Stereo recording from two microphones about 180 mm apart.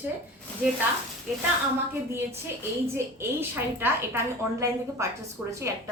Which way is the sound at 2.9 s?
15° right (ahead or behind).